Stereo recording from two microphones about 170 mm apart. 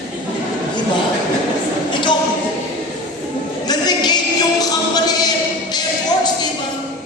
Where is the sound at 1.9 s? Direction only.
25° left (ahead or behind).